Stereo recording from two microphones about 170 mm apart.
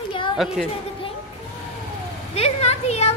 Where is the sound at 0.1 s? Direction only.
30° left (ahead or behind).